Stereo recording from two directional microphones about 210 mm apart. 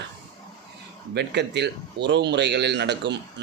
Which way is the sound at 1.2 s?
55° right (ahead or behind).